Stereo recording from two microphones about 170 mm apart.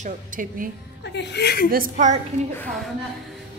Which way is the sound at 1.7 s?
50° right (ahead or behind).